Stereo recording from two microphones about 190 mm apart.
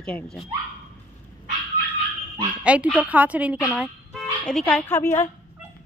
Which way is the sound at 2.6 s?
5° right (ahead or behind).